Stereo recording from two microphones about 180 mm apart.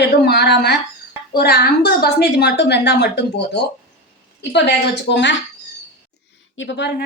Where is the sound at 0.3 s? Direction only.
65° left (ahead or behind).